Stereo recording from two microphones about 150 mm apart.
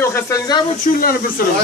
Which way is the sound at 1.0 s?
75° left (ahead or behind).